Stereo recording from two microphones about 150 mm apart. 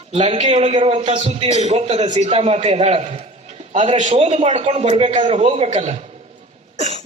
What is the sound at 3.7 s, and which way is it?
A man's voice, 55° right (ahead or behind).